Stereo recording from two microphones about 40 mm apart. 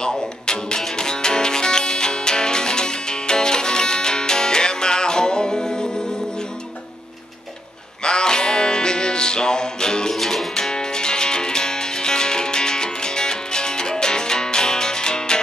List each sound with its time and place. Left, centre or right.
0.1 s music: centre
8.0 s music: centre
10.1 s music: centre
10.5 s music: centre